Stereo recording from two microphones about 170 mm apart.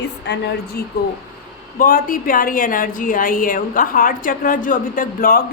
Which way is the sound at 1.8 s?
55° left (ahead or behind).